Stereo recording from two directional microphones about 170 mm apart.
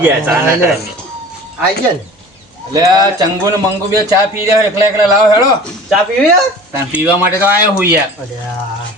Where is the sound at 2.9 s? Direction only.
25° right (ahead or behind).